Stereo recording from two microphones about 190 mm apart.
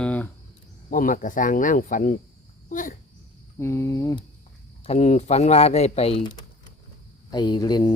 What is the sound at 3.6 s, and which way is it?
Speech, 15° left (ahead or behind).